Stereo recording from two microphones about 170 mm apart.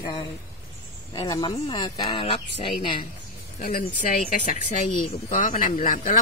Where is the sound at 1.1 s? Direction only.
25° left (ahead or behind).